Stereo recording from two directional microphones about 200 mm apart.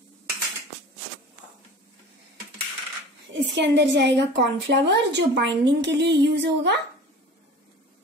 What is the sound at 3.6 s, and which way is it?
A woman's voice, 60° right (ahead or behind).